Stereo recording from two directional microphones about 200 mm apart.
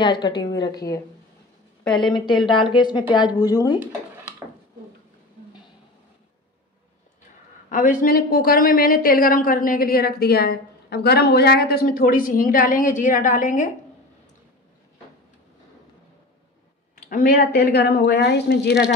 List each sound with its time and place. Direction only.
0.0 s a woman's voice: 25° left (ahead or behind)
2.1 s a woman's voice: 20° left (ahead or behind)
7.7 s a woman's voice: 45° left (ahead or behind)
16.9 s a woman's voice: 45° left (ahead or behind)